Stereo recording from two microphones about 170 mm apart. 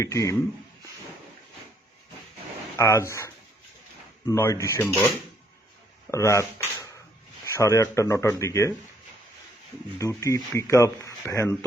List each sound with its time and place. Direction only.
0.0 s speech: 20° left (ahead or behind)
2.7 s speech: 15° left (ahead or behind)
6.1 s speech: 15° left (ahead or behind)
10.0 s speech: 20° left (ahead or behind)